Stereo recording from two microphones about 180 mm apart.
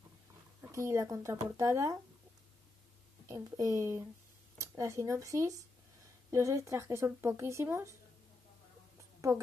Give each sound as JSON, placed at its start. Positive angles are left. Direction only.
{"t": 0.6, "sound": "speech", "side_deg": -15}
{"t": 3.3, "sound": "speech", "side_deg": -15}